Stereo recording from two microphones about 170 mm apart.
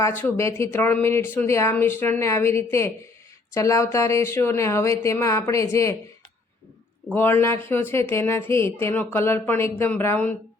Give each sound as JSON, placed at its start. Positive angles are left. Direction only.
{"t": 0.0, "sound": "speech", "side_deg": 10}
{"t": 7.1, "sound": "speech", "side_deg": 15}